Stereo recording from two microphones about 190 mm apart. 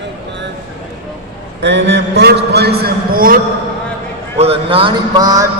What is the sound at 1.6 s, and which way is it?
A man's voice, 70° right (ahead or behind).